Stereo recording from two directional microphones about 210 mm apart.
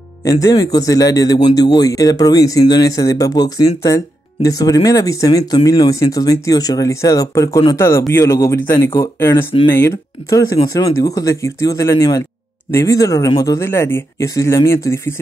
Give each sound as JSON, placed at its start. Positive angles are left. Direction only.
{"t": 0.2, "sound": "speech", "side_deg": 15}